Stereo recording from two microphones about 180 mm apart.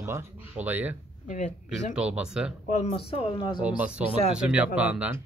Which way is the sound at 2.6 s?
40° left (ahead or behind).